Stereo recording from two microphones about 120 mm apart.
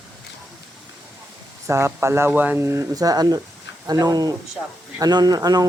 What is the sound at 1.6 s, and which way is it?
Speech, 20° right (ahead or behind).